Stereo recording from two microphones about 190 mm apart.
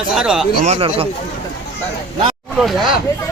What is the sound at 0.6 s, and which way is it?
Speech, 35° right (ahead or behind).